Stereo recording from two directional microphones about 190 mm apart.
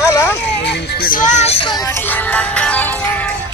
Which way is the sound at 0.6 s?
60° left (ahead or behind).